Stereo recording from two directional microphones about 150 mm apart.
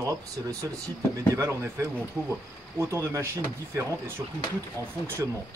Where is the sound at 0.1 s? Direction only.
25° right (ahead or behind).